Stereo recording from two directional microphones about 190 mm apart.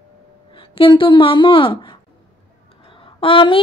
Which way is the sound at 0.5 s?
25° left (ahead or behind).